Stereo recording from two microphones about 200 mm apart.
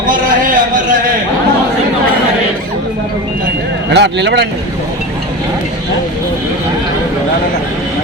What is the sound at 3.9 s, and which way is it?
Speech, 60° right (ahead or behind).